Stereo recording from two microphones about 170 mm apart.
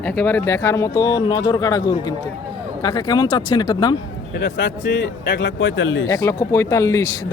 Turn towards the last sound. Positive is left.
turn(degrees=20)  # may be behind; listen again after turning